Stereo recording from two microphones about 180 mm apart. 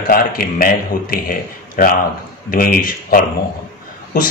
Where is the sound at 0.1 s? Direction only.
50° left (ahead or behind).